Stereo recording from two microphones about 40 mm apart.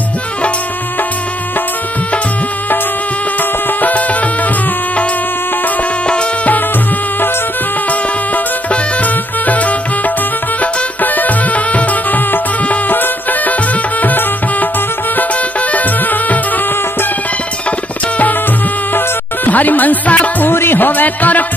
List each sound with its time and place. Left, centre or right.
3.8 s music: left
8.6 s music: left
12.9 s music: left
15.7 s music: left
18.9 s music: left
20.4 s music: left